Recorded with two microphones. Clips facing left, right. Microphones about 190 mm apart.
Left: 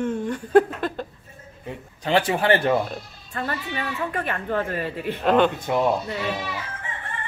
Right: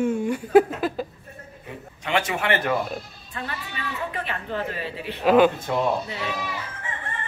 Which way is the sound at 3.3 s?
45° left (ahead or behind).